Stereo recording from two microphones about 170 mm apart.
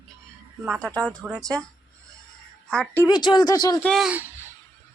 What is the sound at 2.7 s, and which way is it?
Speech, 5° left (ahead or behind).